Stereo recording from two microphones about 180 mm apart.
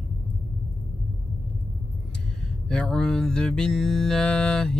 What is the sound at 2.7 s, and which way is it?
Music, 5° left (ahead or behind).